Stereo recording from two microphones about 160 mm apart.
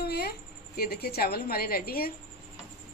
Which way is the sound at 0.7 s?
75° left (ahead or behind).